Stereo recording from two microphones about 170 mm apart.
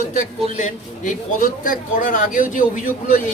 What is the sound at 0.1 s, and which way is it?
A man's voice, 45° left (ahead or behind).